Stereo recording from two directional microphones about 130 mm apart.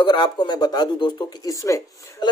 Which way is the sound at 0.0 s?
35° left (ahead or behind).